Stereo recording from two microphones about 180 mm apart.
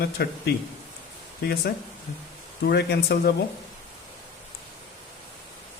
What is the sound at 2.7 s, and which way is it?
Speech, 65° left (ahead or behind).